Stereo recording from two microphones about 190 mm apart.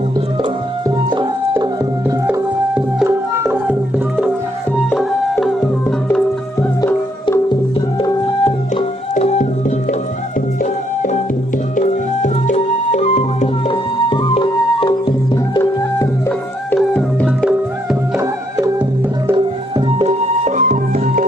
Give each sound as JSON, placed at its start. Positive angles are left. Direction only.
{"t": 0.4, "sound": "music", "side_deg": -25}
{"t": 2.2, "sound": "music", "side_deg": -10}
{"t": 6.1, "sound": "music", "side_deg": 10}
{"t": 8.7, "sound": "music", "side_deg": 35}
{"t": 16.7, "sound": "music", "side_deg": 5}
{"t": 18.2, "sound": "music", "side_deg": -15}
{"t": 19.3, "sound": "music", "side_deg": -30}